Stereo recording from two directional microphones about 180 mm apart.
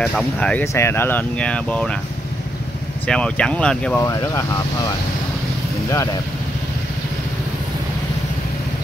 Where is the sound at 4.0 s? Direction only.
15° left (ahead or behind).